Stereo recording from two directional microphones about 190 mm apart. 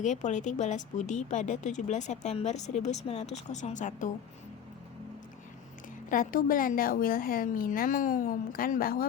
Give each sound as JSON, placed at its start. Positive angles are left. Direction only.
{"t": 0.0, "sound": "a woman's voice", "side_deg": 40}
{"t": 6.1, "sound": "a woman's voice", "side_deg": 45}